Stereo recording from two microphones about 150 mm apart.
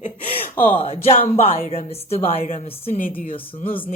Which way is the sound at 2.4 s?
55° left (ahead or behind).